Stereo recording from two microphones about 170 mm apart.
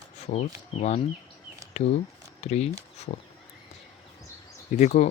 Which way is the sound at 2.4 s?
40° left (ahead or behind).